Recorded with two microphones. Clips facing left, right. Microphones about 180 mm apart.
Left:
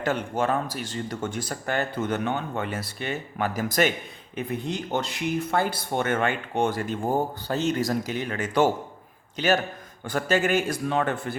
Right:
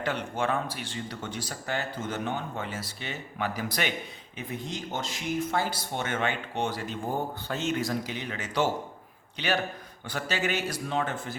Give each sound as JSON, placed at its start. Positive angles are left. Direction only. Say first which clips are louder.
{"t": 0.0, "sound": "speech", "louder": "left 4 dB", "side_deg": 45}
{"t": 4.4, "sound": "a man's voice", "louder": "left 6 dB", "side_deg": 60}